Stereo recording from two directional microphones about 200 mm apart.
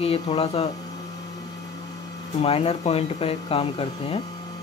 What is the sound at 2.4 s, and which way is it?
Speech, 30° left (ahead or behind).